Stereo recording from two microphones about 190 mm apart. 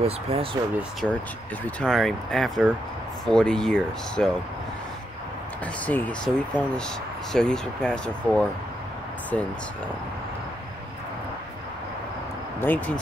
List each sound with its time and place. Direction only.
0.0 s speech: 35° right (ahead or behind)
1.0 s speech: centre (ahead or behind)
5.9 s speech: 5° left (ahead or behind)
12.5 s speech: 10° left (ahead or behind)